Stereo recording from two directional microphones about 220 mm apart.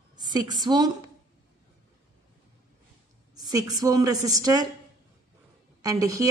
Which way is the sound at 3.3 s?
15° right (ahead or behind).